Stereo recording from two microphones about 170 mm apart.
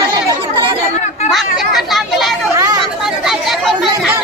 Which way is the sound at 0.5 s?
30° right (ahead or behind).